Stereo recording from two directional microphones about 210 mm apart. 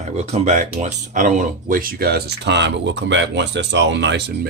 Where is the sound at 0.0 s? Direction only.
30° right (ahead or behind).